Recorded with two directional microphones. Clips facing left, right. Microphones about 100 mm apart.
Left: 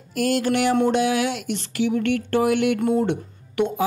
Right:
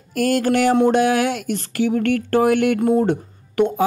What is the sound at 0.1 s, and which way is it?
Speech, 45° right (ahead or behind).